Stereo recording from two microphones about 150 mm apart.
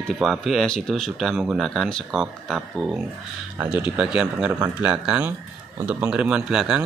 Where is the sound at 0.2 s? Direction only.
Centre (ahead or behind).